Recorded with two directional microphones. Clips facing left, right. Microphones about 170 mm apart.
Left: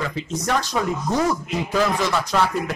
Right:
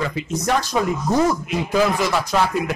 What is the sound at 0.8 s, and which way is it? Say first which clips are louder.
Speech: right 3 dB; 10° right (ahead or behind).